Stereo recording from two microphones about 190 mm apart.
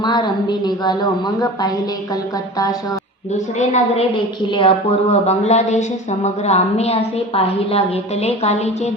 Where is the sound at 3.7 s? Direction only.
30° left (ahead or behind).